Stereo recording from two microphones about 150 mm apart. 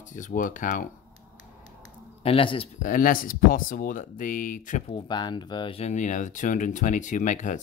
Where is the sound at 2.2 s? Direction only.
40° left (ahead or behind).